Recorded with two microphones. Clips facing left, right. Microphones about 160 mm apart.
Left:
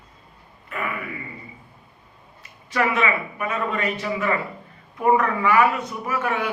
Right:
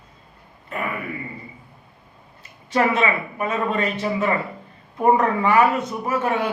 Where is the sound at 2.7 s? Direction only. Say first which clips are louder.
Right 2 dB; 30° right (ahead or behind).